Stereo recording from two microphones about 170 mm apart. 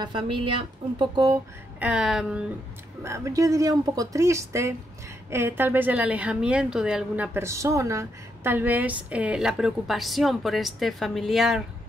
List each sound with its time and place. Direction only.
0.0 s speech: 30° right (ahead or behind)
1.8 s a woman's voice: 5° right (ahead or behind)
3.0 s a woman's voice: 15° right (ahead or behind); by 11.6 s centre (ahead or behind)